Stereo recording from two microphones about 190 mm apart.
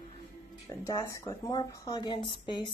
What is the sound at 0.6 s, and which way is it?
Speech, 15° left (ahead or behind).